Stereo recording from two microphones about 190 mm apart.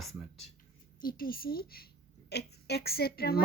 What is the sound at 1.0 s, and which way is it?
A woman's voice, 50° left (ahead or behind).